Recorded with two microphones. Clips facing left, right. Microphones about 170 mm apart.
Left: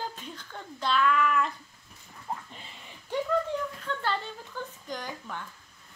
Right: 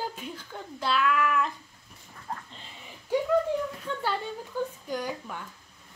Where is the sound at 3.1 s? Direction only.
10° right (ahead or behind).